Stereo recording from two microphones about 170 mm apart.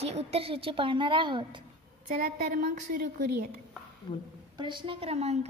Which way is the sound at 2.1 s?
45° right (ahead or behind).